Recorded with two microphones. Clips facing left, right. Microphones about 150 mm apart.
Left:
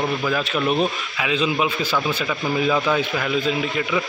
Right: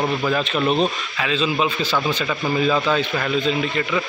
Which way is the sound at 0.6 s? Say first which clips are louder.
Right 1 dB; 25° right (ahead or behind).